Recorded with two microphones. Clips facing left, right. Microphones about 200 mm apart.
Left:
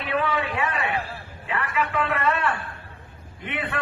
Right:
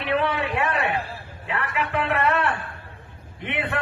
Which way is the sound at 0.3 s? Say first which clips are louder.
Right 2 dB; 70° right (ahead or behind).